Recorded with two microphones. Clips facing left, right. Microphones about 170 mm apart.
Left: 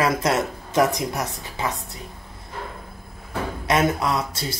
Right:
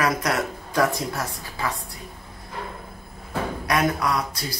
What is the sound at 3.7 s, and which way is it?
Speech, 25° left (ahead or behind).